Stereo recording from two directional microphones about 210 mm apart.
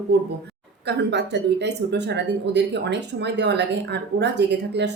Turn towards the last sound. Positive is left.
turn(degrees=-55)  # may be behind; listen again after turning